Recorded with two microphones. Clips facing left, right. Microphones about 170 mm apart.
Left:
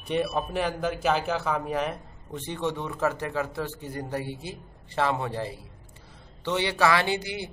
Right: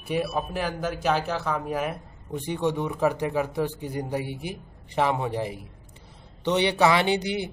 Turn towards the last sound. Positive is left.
turn(degrees=-20)  # may be behind; listen again after turning